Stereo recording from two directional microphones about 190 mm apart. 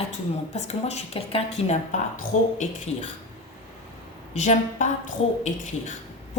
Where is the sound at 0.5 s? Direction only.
35° left (ahead or behind).